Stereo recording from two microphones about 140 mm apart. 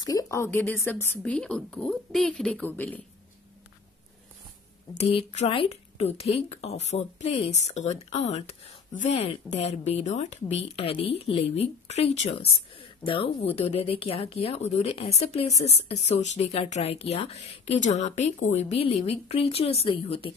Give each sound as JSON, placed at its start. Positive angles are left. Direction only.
{"t": 0.0, "sound": "a woman's voice", "side_deg": 25}
{"t": 4.9, "sound": "speech", "side_deg": 50}